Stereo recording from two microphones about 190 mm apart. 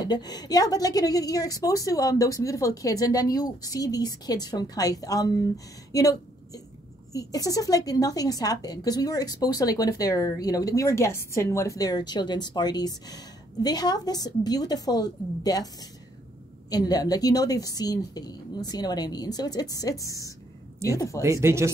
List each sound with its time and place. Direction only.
0.0 s a woman's voice: 20° left (ahead or behind)
5.9 s a sound: 20° left (ahead or behind)
7.1 s a woman's voice: 20° left (ahead or behind)
16.7 s a woman's voice: 20° left (ahead or behind)
21.2 s speech: 15° right (ahead or behind)